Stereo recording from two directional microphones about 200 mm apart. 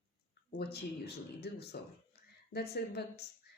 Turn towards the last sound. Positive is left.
turn(degrees=55)  # may be behind; listen again after turning